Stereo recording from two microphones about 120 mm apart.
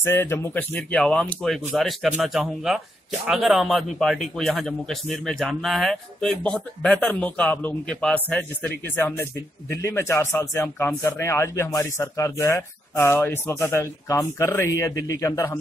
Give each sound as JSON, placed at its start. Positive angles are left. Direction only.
{"t": 0.0, "sound": "a man's voice", "side_deg": 20}